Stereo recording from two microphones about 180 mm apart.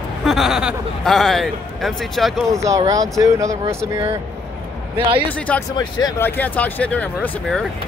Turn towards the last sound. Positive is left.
turn(degrees=5)  # may be behind; listen again after turning